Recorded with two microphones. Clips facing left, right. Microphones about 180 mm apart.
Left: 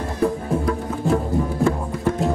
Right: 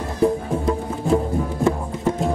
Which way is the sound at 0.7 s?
20° right (ahead or behind).